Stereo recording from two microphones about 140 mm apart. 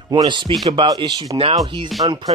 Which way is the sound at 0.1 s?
35° right (ahead or behind).